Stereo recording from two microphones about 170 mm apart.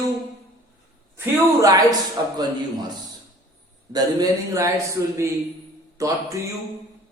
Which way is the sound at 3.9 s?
20° right (ahead or behind).